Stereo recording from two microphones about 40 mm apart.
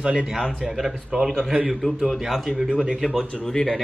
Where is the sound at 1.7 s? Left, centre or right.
Centre.